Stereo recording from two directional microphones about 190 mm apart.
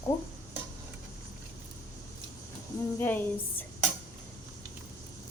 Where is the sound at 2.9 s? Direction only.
10° left (ahead or behind).